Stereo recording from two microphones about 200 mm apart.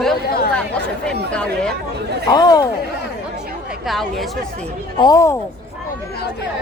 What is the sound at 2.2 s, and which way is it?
Speech, 20° left (ahead or behind).